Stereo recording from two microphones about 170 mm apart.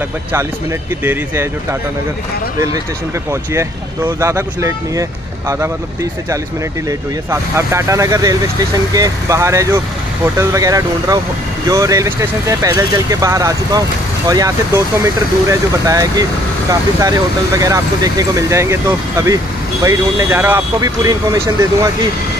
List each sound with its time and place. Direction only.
1.0 s speech: 15° right (ahead or behind)
3.5 s speech: 15° right (ahead or behind)
6.9 s speech: 15° right (ahead or behind)
17.6 s speech: 20° right (ahead or behind)